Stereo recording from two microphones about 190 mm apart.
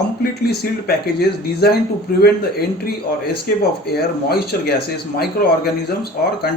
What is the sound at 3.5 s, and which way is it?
Speech, 50° left (ahead or behind).